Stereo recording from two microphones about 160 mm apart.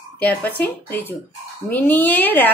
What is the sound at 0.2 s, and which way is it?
A woman's voice, 10° left (ahead or behind).